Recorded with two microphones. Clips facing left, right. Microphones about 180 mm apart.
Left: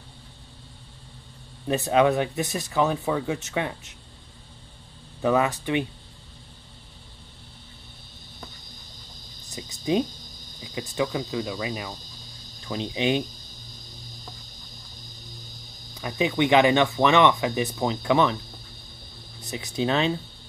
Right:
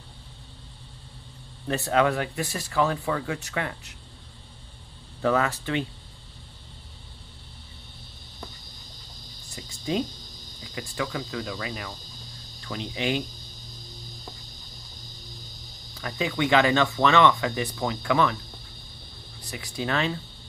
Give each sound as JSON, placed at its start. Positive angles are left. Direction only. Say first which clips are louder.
{"t": 1.7, "sound": "speech", "louder": "left 3 dB", "side_deg": 20}
{"t": 5.2, "sound": "speech", "louder": "left 2 dB", "side_deg": 15}
{"t": 9.6, "sound": "a sound", "louder": "left 4 dB", "side_deg": 20}
{"t": 10.6, "sound": "speech", "louder": "left 5 dB", "side_deg": 20}
{"t": 15.9, "sound": "speech", "louder": "left 4 dB", "side_deg": 20}
{"t": 19.4, "sound": "speech", "louder": "left 5 dB", "side_deg": 20}